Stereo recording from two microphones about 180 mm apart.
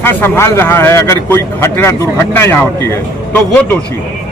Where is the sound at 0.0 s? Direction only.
10° left (ahead or behind).